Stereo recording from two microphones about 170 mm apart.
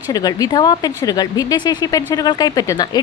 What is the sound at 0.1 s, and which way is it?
A woman's voice, 25° left (ahead or behind).